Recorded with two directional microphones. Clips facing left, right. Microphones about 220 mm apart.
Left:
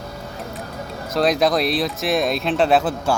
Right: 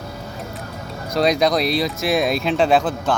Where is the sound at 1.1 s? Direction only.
Centre (ahead or behind).